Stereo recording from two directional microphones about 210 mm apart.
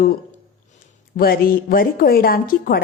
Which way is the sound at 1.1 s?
45° left (ahead or behind).